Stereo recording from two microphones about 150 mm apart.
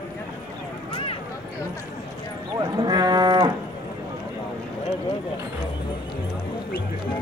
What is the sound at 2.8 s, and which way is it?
Livestock, 30° right (ahead or behind).